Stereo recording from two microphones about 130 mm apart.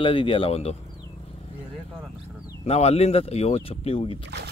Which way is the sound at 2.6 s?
55° left (ahead or behind).